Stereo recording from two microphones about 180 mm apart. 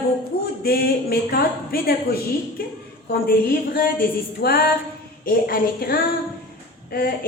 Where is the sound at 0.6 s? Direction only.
60° left (ahead or behind).